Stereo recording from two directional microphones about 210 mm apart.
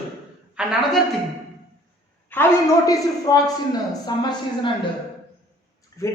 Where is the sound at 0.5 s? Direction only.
Centre (ahead or behind).